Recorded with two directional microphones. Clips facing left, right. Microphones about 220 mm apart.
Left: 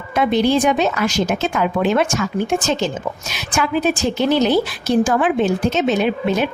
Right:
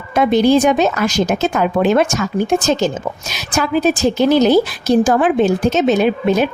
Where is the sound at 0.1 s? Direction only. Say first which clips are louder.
Right 4 dB; 45° right (ahead or behind).